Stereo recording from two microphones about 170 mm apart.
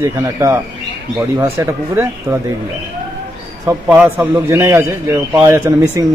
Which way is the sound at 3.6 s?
15° right (ahead or behind).